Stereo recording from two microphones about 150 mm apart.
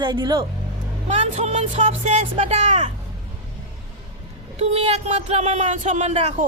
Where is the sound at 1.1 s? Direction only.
50° right (ahead or behind).